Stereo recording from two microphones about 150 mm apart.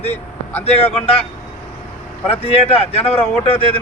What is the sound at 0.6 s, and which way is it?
Speech, 45° left (ahead or behind).